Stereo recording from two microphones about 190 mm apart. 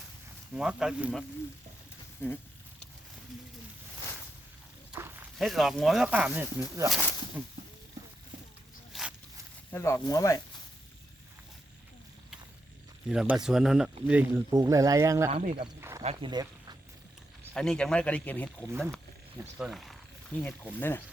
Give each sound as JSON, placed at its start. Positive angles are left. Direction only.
{"t": 0.5, "sound": "speech", "side_deg": -5}
{"t": 4.9, "sound": "speech", "side_deg": -10}
{"t": 8.9, "sound": "zipper", "side_deg": 0}
{"t": 9.7, "sound": "speech", "side_deg": 15}
{"t": 13.1, "sound": "speech", "side_deg": -5}
{"t": 15.3, "sound": "speech", "side_deg": -35}
{"t": 15.8, "sound": "a sound", "side_deg": -15}
{"t": 16.0, "sound": "speech", "side_deg": -25}
{"t": 17.5, "sound": "speech", "side_deg": 5}